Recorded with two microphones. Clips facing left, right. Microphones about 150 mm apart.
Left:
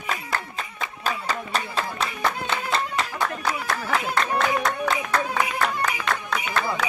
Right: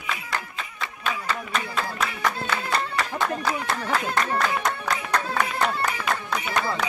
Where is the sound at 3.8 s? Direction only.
10° left (ahead or behind).